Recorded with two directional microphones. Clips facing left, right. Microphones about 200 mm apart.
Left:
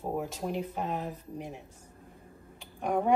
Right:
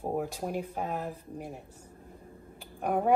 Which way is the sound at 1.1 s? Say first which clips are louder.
Even; 5° right (ahead or behind).